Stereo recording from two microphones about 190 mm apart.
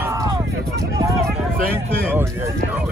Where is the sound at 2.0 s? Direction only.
10° right (ahead or behind).